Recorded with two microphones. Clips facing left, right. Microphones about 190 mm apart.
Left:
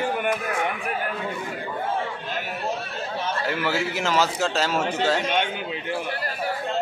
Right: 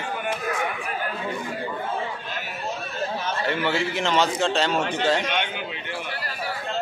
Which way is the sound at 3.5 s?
5° left (ahead or behind).